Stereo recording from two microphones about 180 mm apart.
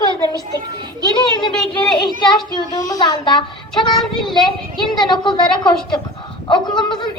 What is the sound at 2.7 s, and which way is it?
Speech, 20° left (ahead or behind).